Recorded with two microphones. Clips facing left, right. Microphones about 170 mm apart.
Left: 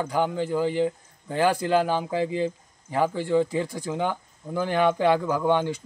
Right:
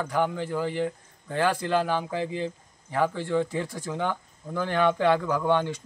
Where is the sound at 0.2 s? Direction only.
20° left (ahead or behind).